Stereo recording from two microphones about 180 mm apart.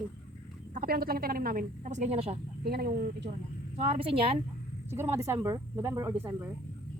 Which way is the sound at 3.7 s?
35° right (ahead or behind).